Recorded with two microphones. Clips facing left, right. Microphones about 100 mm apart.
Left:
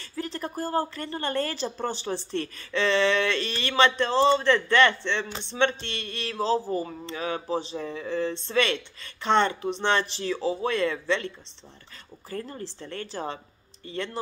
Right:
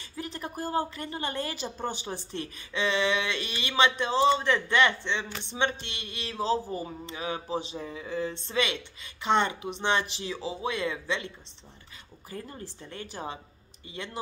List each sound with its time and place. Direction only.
0.0 s a woman's voice: 20° right (ahead or behind)